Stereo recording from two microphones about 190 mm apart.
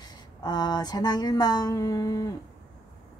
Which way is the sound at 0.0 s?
20° left (ahead or behind).